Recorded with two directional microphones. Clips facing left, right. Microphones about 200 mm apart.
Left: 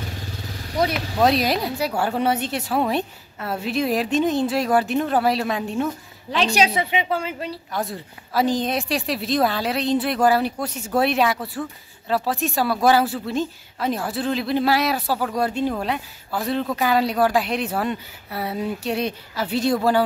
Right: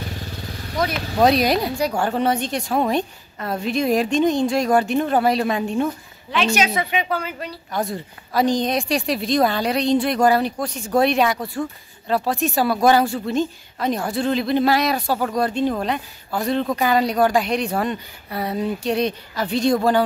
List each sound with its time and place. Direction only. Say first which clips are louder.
0.8 s speech: left 1 dB; 35° left (ahead or behind)
1.2 s a woman's voice: right 3 dB; centre (ahead or behind)
6.3 s a woman's voice: even; 35° left (ahead or behind)
7.7 s a woman's voice: right 6 dB; centre (ahead or behind)